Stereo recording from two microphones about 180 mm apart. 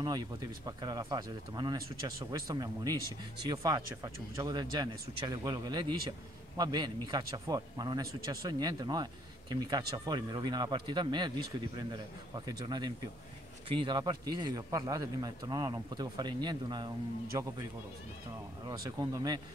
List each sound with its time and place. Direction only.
0.0 s speech: 20° right (ahead or behind)
18.7 s speech: 20° right (ahead or behind)